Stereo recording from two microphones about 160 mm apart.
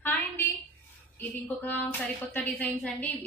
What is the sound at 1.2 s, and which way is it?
A woman's voice, 10° left (ahead or behind).